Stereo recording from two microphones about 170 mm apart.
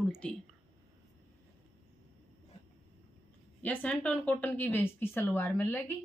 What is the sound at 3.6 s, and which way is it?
A woman's voice, 10° left (ahead or behind).